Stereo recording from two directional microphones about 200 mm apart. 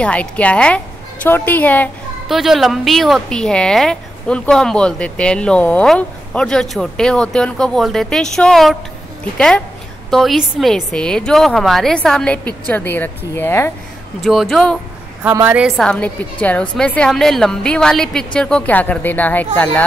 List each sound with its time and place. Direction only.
0.0 s a woman's voice: 5° left (ahead or behind)
10.1 s a woman's voice: centre (ahead or behind)
14.2 s a woman's voice: centre (ahead or behind)
15.2 s a woman's voice: 10° right (ahead or behind); by 19.8 s 10° left (ahead or behind)